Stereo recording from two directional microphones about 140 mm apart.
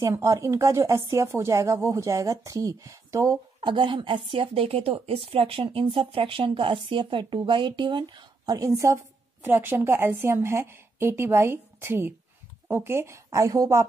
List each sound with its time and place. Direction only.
0.0 s speech: 20° right (ahead or behind)
3.7 s speech: 35° right (ahead or behind); by 13.8 s 20° right (ahead or behind)